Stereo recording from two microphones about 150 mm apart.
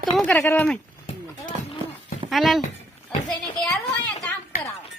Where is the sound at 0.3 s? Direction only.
10° left (ahead or behind).